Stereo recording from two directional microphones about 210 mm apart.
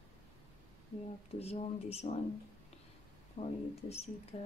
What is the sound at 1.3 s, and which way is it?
Speech, 30° left (ahead or behind).